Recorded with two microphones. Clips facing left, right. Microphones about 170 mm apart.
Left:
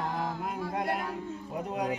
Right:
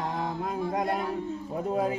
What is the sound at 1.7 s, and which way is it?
Music, 25° right (ahead or behind).